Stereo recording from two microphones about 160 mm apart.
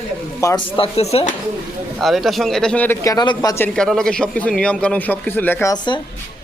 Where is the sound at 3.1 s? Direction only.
25° left (ahead or behind).